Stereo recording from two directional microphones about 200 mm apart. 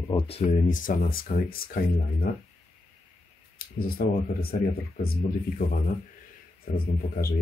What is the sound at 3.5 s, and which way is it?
Speech, 50° left (ahead or behind).